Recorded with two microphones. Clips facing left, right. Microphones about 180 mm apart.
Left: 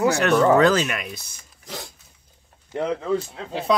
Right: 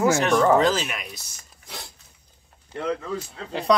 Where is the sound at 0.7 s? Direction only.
60° left (ahead or behind).